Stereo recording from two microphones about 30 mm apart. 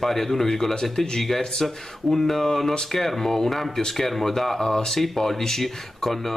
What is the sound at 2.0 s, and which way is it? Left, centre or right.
Speech, centre.